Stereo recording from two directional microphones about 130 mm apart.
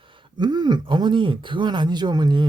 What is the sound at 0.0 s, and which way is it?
Speech, 40° right (ahead or behind).